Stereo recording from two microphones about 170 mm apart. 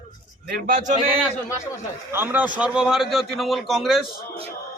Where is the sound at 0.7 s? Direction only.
50° right (ahead or behind).